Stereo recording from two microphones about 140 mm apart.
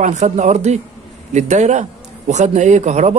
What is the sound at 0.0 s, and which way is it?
A man's voice, 55° right (ahead or behind).